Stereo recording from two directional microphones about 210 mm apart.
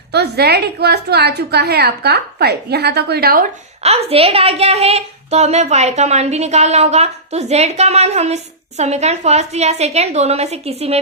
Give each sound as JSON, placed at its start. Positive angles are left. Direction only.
{"t": 0.1, "sound": "a woman's voice", "side_deg": -50}
{"t": 3.8, "sound": "a woman's voice", "side_deg": -30}